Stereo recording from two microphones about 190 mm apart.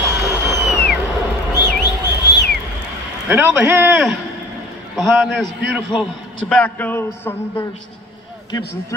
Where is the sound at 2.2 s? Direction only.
60° left (ahead or behind).